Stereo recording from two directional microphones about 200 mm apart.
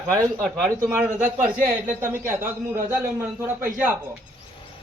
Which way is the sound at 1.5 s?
45° right (ahead or behind).